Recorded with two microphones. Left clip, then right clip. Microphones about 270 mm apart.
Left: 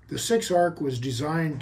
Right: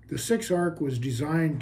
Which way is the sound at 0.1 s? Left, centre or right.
Centre.